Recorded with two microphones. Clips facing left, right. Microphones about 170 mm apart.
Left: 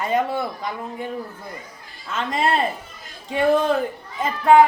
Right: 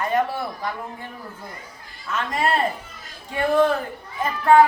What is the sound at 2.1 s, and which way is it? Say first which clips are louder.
A man's voice: left 1 dB; 25° left (ahead or behind).